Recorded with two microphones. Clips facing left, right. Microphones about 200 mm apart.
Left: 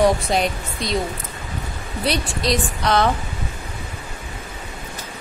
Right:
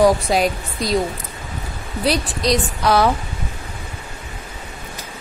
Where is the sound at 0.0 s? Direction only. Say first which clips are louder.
Right 3 dB; centre (ahead or behind).